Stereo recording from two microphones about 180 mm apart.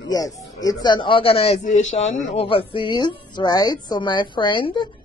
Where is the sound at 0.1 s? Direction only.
20° left (ahead or behind).